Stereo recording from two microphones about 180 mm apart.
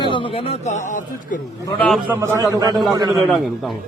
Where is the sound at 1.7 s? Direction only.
5° left (ahead or behind).